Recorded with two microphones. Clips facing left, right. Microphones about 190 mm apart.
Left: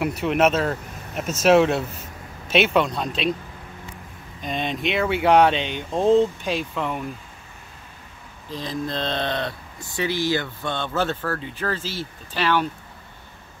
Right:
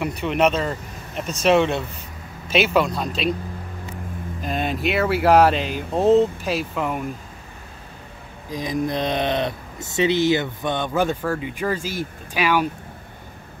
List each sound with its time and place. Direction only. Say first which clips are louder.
0.0 s speech: even; centre (ahead or behind)
4.4 s speech: right 2 dB; 5° right (ahead or behind)
8.5 s speech: right 4 dB; 15° right (ahead or behind)